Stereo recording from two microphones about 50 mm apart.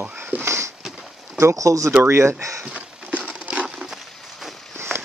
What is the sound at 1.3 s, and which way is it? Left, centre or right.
Speech, right.